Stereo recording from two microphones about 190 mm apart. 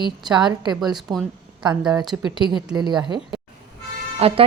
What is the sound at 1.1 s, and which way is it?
Speech, centre (ahead or behind).